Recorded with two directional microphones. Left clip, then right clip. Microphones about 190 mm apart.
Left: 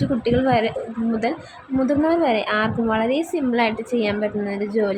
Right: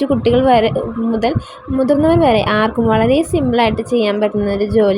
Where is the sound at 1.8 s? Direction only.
20° right (ahead or behind).